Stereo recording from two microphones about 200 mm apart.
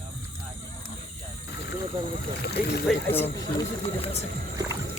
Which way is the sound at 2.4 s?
55° left (ahead or behind).